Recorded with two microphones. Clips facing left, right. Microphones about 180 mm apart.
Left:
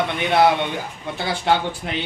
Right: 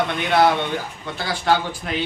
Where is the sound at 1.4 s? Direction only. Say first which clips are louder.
Right 1 dB; 20° left (ahead or behind).